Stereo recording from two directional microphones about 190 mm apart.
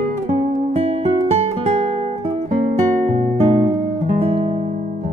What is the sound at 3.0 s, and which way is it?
Music, 35° right (ahead or behind).